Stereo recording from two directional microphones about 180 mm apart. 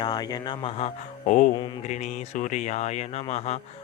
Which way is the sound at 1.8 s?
40° left (ahead or behind).